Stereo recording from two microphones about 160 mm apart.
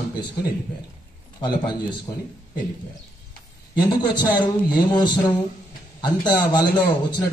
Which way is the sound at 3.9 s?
25° left (ahead or behind).